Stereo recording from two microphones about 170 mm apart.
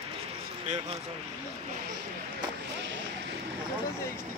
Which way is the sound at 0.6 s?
40° right (ahead or behind).